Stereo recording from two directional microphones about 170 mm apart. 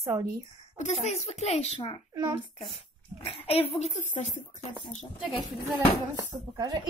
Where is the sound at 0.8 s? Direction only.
40° left (ahead or behind).